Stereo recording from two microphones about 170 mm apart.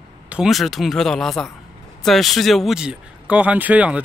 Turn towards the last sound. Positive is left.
turn(degrees=-10)  # may be behind; listen again after turning